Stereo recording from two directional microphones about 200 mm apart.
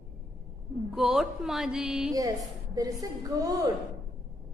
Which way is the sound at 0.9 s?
Centre (ahead or behind).